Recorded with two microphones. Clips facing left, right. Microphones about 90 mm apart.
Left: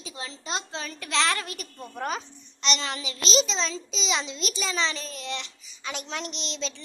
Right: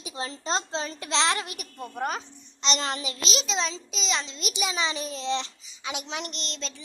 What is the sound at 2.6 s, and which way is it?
Child singing, 35° right (ahead or behind).